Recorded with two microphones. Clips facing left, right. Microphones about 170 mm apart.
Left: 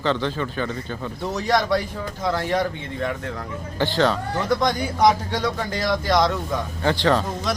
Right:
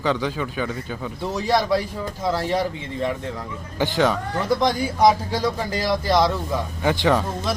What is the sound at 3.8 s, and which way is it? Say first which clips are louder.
Speech: even; 15° right (ahead or behind).